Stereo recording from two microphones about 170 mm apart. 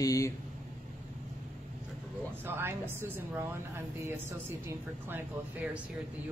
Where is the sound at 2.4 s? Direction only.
15° right (ahead or behind).